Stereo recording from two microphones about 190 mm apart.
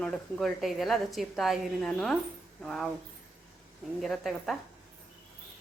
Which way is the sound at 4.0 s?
Centre (ahead or behind).